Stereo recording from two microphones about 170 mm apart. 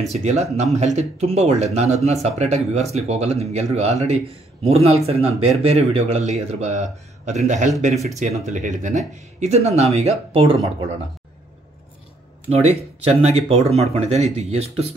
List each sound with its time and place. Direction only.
0.1 s speech: 40° right (ahead or behind)
12.4 s speech: 35° right (ahead or behind)